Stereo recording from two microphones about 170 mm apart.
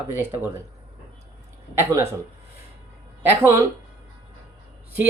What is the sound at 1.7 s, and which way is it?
Speech, 15° right (ahead or behind).